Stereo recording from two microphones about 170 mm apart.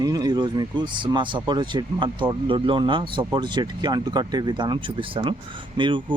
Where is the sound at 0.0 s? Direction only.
20° right (ahead or behind).